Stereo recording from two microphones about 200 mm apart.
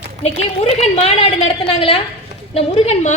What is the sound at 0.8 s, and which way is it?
Speech, 30° left (ahead or behind).